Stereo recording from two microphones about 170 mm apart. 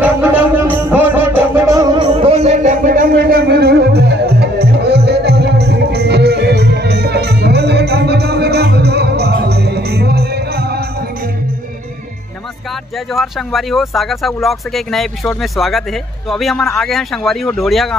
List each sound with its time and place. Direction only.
0.0 s music: 10° right (ahead or behind)
2.1 s music: 35° right (ahead or behind); by 10.8 s 70° right (ahead or behind)
13.1 s speech: centre (ahead or behind)